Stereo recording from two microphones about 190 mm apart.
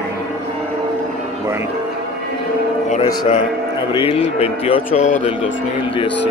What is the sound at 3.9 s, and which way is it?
Speech, 30° left (ahead or behind).